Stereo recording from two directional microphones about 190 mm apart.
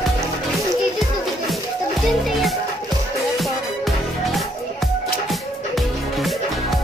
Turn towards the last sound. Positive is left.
turn(degrees=0)  # may be behind; listen again after turning